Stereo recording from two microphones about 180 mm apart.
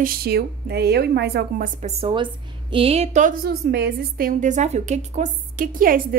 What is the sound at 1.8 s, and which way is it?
A woman's voice, 35° right (ahead or behind).